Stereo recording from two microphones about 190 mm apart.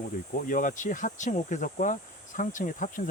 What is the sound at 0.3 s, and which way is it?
Speech, 45° left (ahead or behind).